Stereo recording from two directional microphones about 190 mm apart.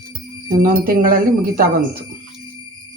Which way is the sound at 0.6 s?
50° right (ahead or behind).